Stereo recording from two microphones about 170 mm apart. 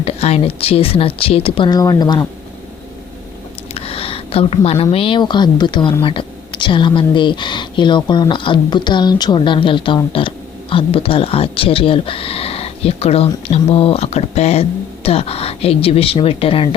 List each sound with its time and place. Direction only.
0.0 s speech: 40° left (ahead or behind)
3.8 s a woman's voice: 35° left (ahead or behind)